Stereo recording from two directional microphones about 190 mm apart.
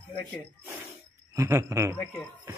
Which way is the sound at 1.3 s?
15° right (ahead or behind).